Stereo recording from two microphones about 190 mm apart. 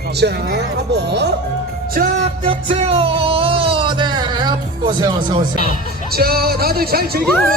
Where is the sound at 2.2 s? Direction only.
30° right (ahead or behind).